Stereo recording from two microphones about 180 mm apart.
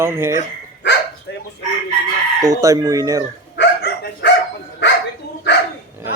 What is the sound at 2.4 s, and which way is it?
Chicken, 20° right (ahead or behind).